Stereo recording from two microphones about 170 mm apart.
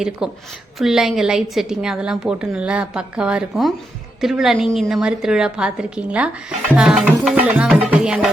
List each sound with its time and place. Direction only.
0.2 s a woman's voice: 5° right (ahead or behind)